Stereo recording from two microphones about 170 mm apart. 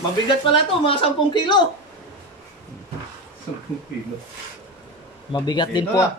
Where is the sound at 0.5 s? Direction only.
30° left (ahead or behind).